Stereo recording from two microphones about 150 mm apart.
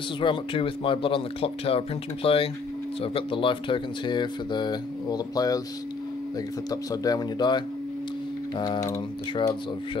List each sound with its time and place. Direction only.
0.2 s speech: 35° left (ahead or behind)
6.7 s speech: 25° left (ahead or behind)